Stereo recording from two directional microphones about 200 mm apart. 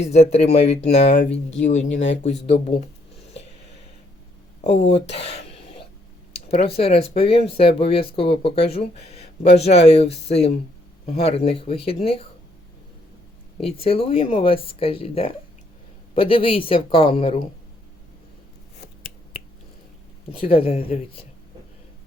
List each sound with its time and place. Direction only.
0.0 s speech: 35° left (ahead or behind)
1.9 s speech: 70° left (ahead or behind)
4.6 s speech: 60° left (ahead or behind)
5.0 s speech: 30° left (ahead or behind)
5.5 s throat clearing: 30° left (ahead or behind)
6.5 s speech: 30° left (ahead or behind)
13.6 s speech: 30° left (ahead or behind)
20.3 s speech: 30° left (ahead or behind)